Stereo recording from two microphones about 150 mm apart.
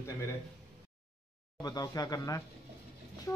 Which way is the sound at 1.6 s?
25° left (ahead or behind).